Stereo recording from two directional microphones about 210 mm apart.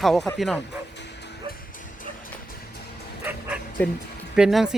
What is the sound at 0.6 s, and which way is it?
Bow-wow, 55° left (ahead or behind).